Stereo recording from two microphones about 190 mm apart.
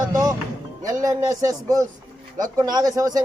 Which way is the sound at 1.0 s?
20° right (ahead or behind).